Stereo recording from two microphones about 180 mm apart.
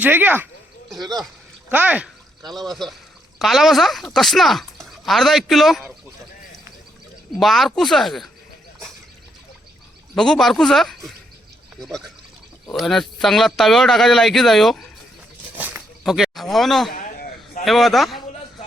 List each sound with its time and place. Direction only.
0.0 s speech: 10° right (ahead or behind)
1.7 s speech: 10° right (ahead or behind)
2.4 s speech: 25° right (ahead or behind)
2.6 s speech: centre (ahead or behind)
7.3 s speech: centre (ahead or behind)
10.2 s speech: centre (ahead or behind)
15.5 s a sound: 5° right (ahead or behind)
16.9 s a sound: 50° left (ahead or behind)
17.7 s speech: centre (ahead or behind)